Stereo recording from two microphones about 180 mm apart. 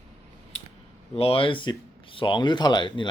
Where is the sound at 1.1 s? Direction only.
30° left (ahead or behind).